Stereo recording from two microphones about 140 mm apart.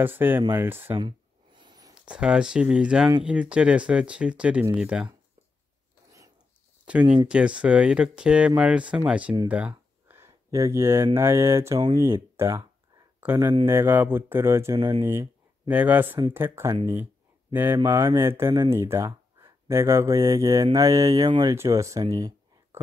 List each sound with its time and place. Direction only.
0.0 s speech: 15° right (ahead or behind)
0.9 s a sound: 35° right (ahead or behind)
2.0 s speech: 5° right (ahead or behind)
6.9 s speech: 10° right (ahead or behind)
9.5 s a sound: 10° right (ahead or behind)
11.1 s speech: 20° right (ahead or behind)
14.8 s speech: 30° right (ahead or behind)
15.0 s speech: 20° right (ahead or behind)